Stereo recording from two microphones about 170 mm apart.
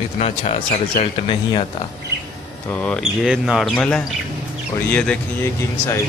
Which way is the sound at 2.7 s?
10° left (ahead or behind).